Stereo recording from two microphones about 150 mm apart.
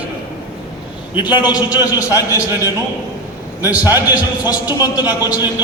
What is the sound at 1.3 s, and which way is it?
A man's voice, 25° left (ahead or behind).